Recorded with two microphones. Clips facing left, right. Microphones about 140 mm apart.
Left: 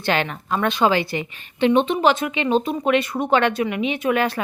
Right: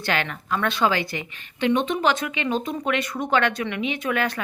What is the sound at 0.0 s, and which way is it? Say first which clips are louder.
Speech: left 4 dB; 25° left (ahead or behind).